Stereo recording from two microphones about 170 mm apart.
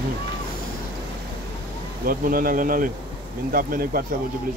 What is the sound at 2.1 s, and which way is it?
A man's voice, 55° right (ahead or behind).